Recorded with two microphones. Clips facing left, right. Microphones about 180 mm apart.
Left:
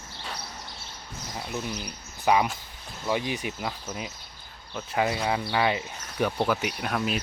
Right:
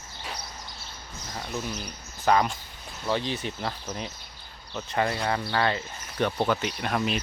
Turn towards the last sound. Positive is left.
turn(degrees=5)  # may be behind; listen again after turning